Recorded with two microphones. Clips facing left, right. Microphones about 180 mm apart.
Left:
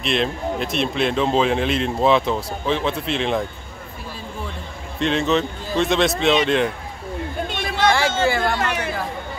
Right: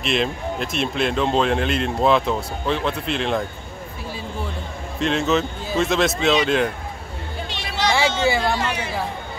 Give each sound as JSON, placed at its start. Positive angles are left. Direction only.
{"t": 0.0, "sound": "speech", "side_deg": 0}
{"t": 4.9, "sound": "speech", "side_deg": 0}
{"t": 7.4, "sound": "a sound", "side_deg": 50}
{"t": 8.3, "sound": "speech", "side_deg": -10}